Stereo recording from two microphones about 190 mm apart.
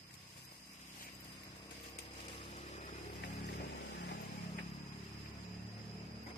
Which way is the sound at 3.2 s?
55° left (ahead or behind).